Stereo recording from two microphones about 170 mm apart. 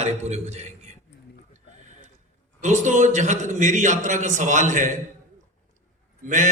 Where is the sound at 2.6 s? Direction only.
45° right (ahead or behind).